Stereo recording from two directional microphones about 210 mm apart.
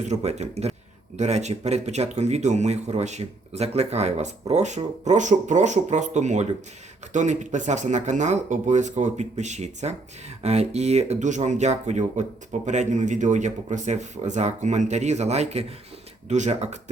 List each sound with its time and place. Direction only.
0.1 s speech: 30° right (ahead or behind)